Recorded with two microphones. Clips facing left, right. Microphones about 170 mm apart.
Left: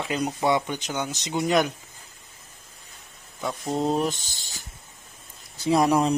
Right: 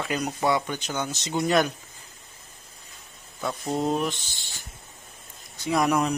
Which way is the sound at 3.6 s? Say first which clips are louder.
Left 1 dB; centre (ahead or behind).